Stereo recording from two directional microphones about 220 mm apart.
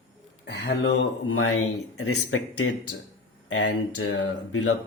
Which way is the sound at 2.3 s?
70° left (ahead or behind).